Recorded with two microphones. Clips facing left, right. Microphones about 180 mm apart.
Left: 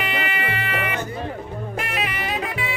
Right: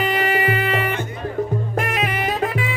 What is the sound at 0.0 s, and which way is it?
Music, 40° right (ahead or behind).